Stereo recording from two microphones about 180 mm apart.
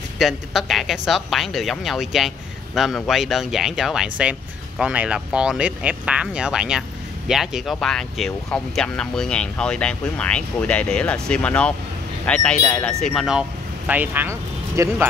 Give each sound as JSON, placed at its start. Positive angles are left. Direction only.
{"t": 0.2, "sound": "speech", "side_deg": 0}